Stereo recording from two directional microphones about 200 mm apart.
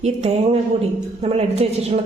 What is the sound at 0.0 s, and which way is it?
Speech, 30° right (ahead or behind).